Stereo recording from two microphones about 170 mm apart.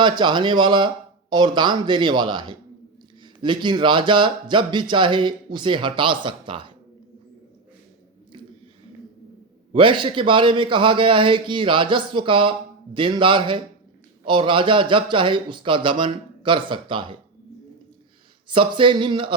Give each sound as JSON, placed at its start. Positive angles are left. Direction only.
{"t": 0.0, "sound": "a man's voice", "side_deg": -25}
{"t": 9.7, "sound": "a man's voice", "side_deg": -30}
{"t": 18.4, "sound": "a man's voice", "side_deg": -30}